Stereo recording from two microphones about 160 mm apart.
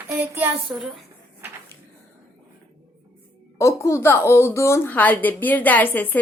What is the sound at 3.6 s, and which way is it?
A woman's voice, 15° left (ahead or behind).